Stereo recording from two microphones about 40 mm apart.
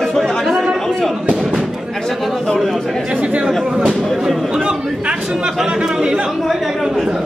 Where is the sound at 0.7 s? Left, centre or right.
Centre.